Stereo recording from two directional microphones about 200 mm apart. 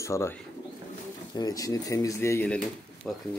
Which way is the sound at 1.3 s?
20° left (ahead or behind).